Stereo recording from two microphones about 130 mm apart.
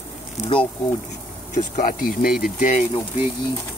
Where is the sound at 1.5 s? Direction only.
90° left.